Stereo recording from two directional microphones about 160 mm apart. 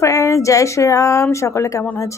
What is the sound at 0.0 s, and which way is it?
A woman's voice, 20° left (ahead or behind).